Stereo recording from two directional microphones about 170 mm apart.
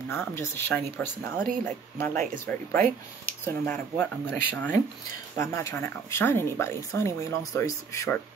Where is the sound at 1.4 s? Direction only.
55° right (ahead or behind).